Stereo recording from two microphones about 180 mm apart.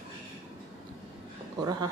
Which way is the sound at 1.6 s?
20° right (ahead or behind).